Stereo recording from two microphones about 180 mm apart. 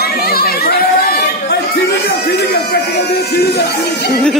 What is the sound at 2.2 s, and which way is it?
Speech, 60° left (ahead or behind).